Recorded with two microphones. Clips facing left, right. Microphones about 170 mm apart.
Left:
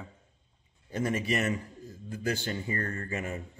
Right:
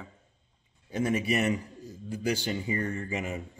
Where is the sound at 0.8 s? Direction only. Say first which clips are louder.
Right 2 dB; 10° right (ahead or behind).